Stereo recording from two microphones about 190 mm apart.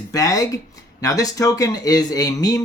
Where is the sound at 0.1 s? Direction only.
20° left (ahead or behind).